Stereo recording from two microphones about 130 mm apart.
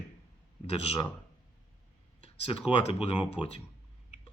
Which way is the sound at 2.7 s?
45° left (ahead or behind).